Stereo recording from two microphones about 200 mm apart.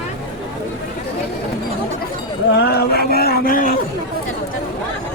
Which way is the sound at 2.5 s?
55° left (ahead or behind).